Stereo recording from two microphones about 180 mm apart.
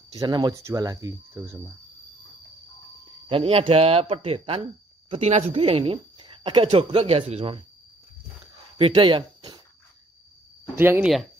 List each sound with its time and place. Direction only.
0.2 s speech: 20° right (ahead or behind)
3.3 s speech: 30° right (ahead or behind)
8.7 s speech: 30° right (ahead or behind)
10.8 s speech: 10° right (ahead or behind)